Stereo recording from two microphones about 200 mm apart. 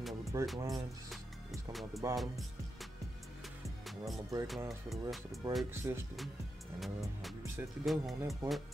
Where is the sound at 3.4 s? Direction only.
Centre (ahead or behind).